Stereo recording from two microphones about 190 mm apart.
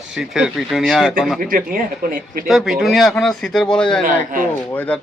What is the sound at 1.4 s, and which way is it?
Speech, 50° right (ahead or behind).